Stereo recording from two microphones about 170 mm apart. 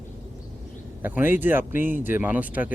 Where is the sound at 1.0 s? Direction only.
10° right (ahead or behind).